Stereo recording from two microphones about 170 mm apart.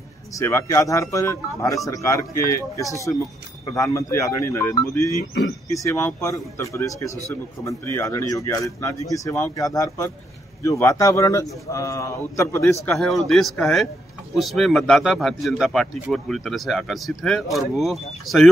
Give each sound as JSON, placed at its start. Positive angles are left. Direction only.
{"t": 0.4, "sound": "a man's voice", "side_deg": 15}